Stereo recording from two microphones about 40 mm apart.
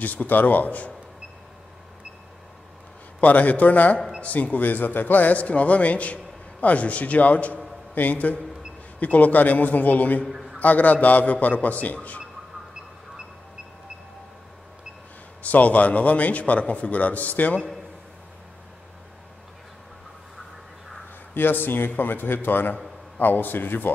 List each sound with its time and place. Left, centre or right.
0.0 s a man's voice: left
3.2 s a man's voice: left
15.4 s speech: left
21.4 s speech: left